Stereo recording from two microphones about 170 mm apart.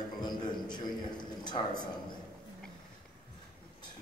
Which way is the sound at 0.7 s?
25° left (ahead or behind).